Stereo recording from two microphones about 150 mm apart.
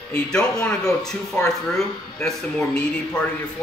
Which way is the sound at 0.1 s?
5° left (ahead or behind).